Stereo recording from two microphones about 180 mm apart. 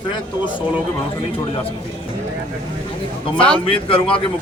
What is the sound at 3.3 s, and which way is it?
Speech, 5° left (ahead or behind).